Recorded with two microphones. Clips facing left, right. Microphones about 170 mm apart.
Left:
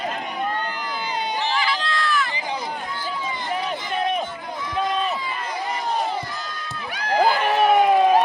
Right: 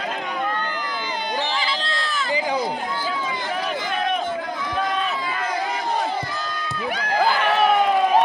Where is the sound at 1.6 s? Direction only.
25° right (ahead or behind).